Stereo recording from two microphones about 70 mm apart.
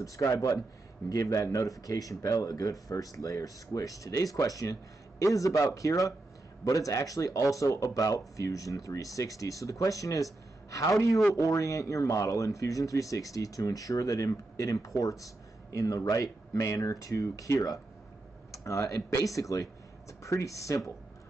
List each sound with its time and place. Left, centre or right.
0.0 s speech: left